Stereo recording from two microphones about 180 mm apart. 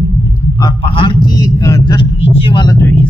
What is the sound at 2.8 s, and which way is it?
Speech, 10° left (ahead or behind).